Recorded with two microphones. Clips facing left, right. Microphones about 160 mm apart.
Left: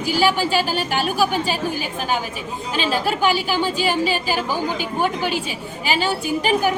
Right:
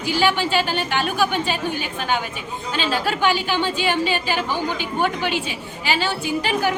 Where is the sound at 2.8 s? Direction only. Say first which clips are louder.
Left 1 dB; 10° left (ahead or behind).